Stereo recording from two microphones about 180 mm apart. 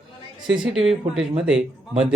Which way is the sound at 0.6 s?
Centre (ahead or behind).